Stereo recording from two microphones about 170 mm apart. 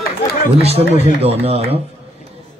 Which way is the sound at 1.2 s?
35° right (ahead or behind).